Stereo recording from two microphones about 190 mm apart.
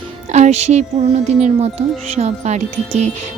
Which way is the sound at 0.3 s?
35° right (ahead or behind).